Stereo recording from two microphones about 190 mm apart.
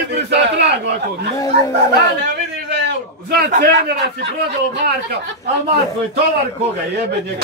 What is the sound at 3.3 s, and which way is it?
Speech, 55° right (ahead or behind).